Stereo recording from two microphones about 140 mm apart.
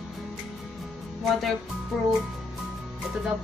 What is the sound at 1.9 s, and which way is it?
Speech, 5° right (ahead or behind).